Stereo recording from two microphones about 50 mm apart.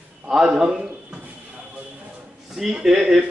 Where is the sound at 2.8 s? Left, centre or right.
Centre.